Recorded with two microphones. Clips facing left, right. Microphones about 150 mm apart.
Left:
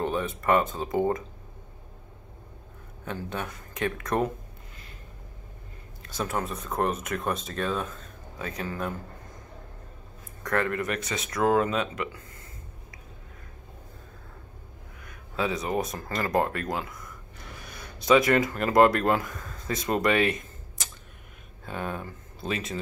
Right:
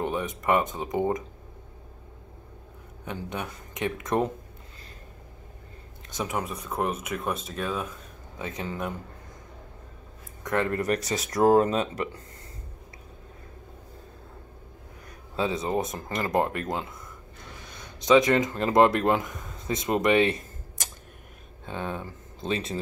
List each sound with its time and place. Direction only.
0.0 s speech: 15° right (ahead or behind)
3.1 s speech: 15° right (ahead or behind)
6.0 s speech: 15° right (ahead or behind)
10.4 s speech: 20° right (ahead or behind)
10.7 s speech: 35° right (ahead or behind)
15.0 s speech: 25° right (ahead or behind)
21.6 s speech: 20° right (ahead or behind)
22.5 s speech: 30° right (ahead or behind)